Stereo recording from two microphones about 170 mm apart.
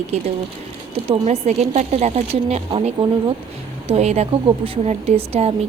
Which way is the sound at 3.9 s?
40° right (ahead or behind).